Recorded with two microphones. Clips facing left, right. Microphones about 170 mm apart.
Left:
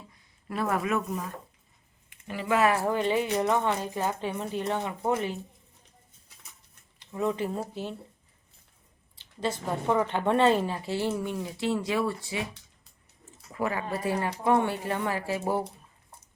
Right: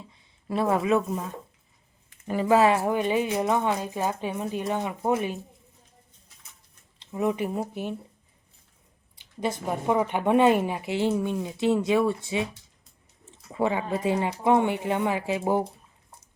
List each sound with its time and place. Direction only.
0.1 s speech: 25° right (ahead or behind)
2.2 s speech: 40° right (ahead or behind); by 5.4 s 15° right (ahead or behind)
7.0 s speech: 15° right (ahead or behind)
9.1 s speech: 15° right (ahead or behind)
13.5 s speech: 25° right (ahead or behind)